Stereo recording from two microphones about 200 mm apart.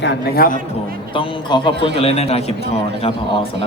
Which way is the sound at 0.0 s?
55° left (ahead or behind).